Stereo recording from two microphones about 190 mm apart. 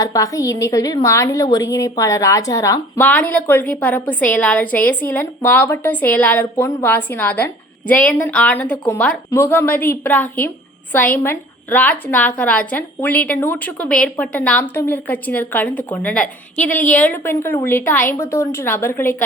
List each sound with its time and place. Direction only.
0.0 s a woman's voice: 15° left (ahead or behind)